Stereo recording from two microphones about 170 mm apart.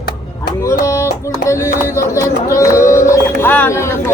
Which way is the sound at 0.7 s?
15° left (ahead or behind).